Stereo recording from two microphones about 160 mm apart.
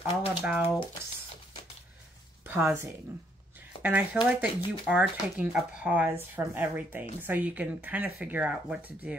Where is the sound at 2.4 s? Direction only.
15° right (ahead or behind).